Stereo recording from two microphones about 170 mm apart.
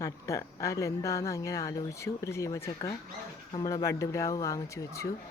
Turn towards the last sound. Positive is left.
turn(degrees=20)  # may be behind; listen again after turning